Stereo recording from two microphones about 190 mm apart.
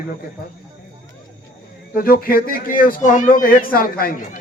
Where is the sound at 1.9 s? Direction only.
50° left (ahead or behind).